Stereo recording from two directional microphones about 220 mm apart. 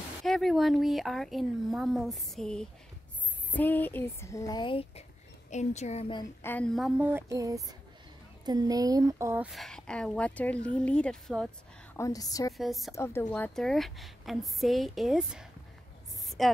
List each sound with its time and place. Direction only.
0.2 s a woman's voice: centre (ahead or behind); by 6.2 s 25° left (ahead or behind)
6.4 s a woman's voice: 5° left (ahead or behind)
12.0 s speech: 15° left (ahead or behind)
12.5 s a woman's voice: centre (ahead or behind)
12.9 s a woman's voice: 10° left (ahead or behind)
16.3 s a sound: centre (ahead or behind)